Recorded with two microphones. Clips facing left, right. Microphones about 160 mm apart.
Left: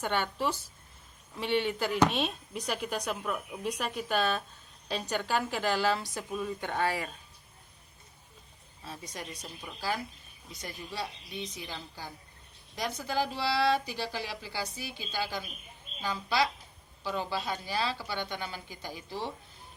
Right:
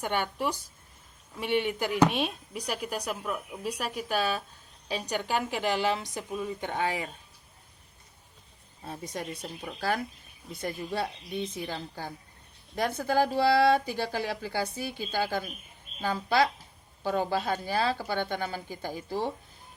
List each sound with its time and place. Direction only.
0.0 s speech: 10° right (ahead or behind)
8.8 s speech: 55° right (ahead or behind)